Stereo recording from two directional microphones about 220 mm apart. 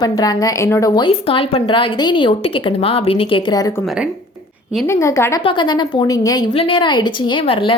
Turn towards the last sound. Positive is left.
turn(degrees=25)  # may be behind; listen again after turning